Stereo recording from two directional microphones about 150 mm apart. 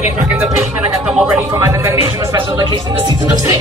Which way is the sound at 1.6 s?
20° right (ahead or behind).